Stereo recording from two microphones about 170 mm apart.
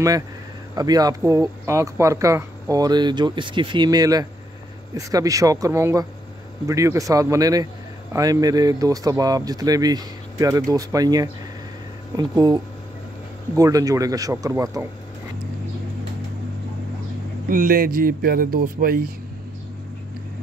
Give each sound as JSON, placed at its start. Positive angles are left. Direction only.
{"t": 0.7, "sound": "speech", "side_deg": -20}
{"t": 13.6, "sound": "speech", "side_deg": -20}
{"t": 17.5, "sound": "speech", "side_deg": -55}